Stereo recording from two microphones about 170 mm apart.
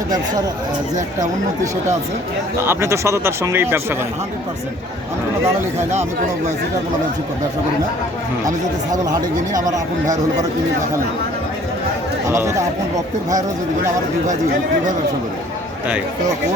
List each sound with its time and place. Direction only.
2.6 s speech: 15° right (ahead or behind)
8.4 s speech: 20° right (ahead or behind)
12.3 s speech: 15° right (ahead or behind)